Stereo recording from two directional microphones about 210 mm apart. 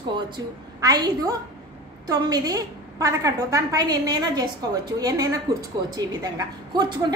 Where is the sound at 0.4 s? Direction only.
15° right (ahead or behind).